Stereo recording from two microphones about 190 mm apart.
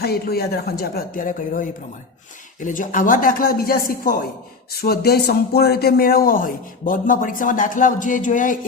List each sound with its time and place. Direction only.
0.0 s speech: 55° left (ahead or behind)